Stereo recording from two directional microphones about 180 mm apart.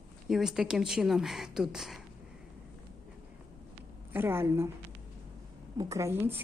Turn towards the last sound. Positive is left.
turn(degrees=-15)  # may be behind; listen again after turning